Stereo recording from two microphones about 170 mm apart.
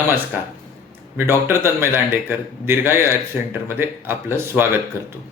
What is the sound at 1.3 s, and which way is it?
Speech, 15° right (ahead or behind).